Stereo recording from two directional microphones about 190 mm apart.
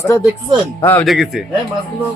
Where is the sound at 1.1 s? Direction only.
Centre (ahead or behind).